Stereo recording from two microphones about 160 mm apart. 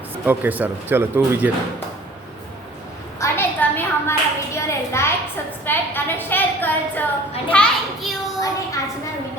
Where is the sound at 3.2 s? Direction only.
15° left (ahead or behind).